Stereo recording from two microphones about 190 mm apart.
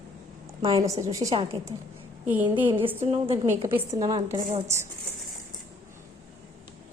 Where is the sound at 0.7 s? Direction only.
15° right (ahead or behind).